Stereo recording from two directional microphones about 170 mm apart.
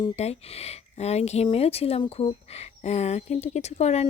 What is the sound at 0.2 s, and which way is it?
Speech, 40° left (ahead or behind).